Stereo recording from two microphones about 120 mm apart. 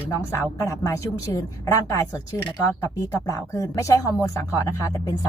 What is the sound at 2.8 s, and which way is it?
Speech, 25° left (ahead or behind).